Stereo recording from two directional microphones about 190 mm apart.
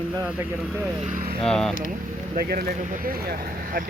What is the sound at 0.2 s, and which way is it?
Speech, 10° right (ahead or behind).